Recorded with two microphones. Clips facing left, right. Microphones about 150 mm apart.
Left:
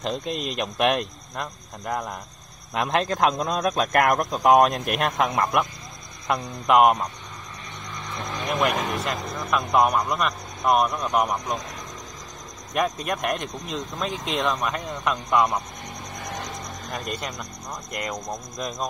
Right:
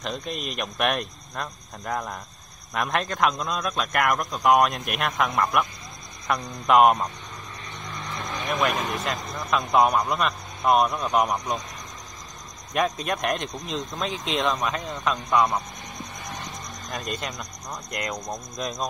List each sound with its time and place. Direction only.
0.0 s speech: 25° left (ahead or behind)
1.3 s speech: 10° left (ahead or behind)
2.7 s speech: 25° left (ahead or behind)
6.6 s speech: centre (ahead or behind)
8.5 s speech: 20° left (ahead or behind)
9.0 s speech: 5° left (ahead or behind)
12.7 s speech: 5° left (ahead or behind)
16.9 s speech: 5° left (ahead or behind)